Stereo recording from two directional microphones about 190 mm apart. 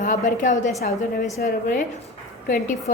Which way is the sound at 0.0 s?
40° left (ahead or behind).